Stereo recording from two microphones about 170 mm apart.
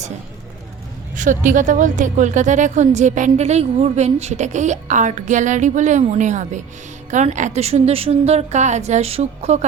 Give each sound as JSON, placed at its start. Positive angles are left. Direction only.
{"t": 1.1, "sound": "a woman's voice", "side_deg": -50}